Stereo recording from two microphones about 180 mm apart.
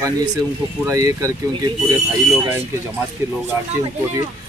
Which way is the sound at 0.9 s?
15° right (ahead or behind).